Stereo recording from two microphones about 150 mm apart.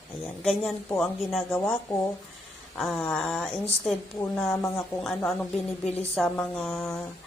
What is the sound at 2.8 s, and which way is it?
A woman's voice, centre (ahead or behind).